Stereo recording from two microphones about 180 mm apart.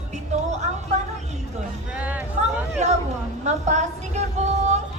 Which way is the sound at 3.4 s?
40° right (ahead or behind).